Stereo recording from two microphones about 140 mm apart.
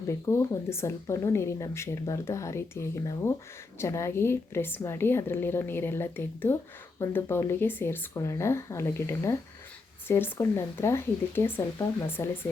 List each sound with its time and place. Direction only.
0.1 s a woman's voice: 20° left (ahead or behind)